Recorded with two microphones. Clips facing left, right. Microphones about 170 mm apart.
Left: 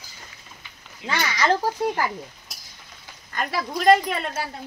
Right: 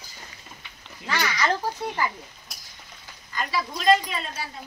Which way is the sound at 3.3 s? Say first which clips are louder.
Left 2 dB; 55° left (ahead or behind).